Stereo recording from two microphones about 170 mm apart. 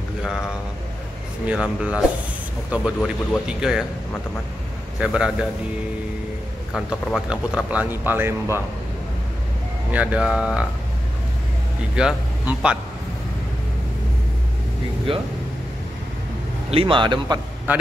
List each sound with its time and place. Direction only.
1.5 s speech: 5° right (ahead or behind)
4.9 s speech: 5° right (ahead or behind)
6.7 s speech: centre (ahead or behind)
9.8 s speech: 5° right (ahead or behind)
11.9 s speech: 5° right (ahead or behind)
15.1 s speech: 30° right (ahead or behind)
16.7 s a man's voice: 30° right (ahead or behind)
17.7 s speech: 10° right (ahead or behind)